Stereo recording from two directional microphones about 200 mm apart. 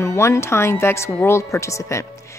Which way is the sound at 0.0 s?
15° left (ahead or behind).